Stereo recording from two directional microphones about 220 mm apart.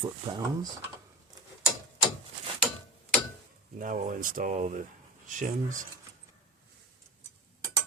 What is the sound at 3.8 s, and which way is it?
Speech, 35° right (ahead or behind).